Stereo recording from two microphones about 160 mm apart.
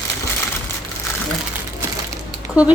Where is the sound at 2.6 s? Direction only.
5° right (ahead or behind).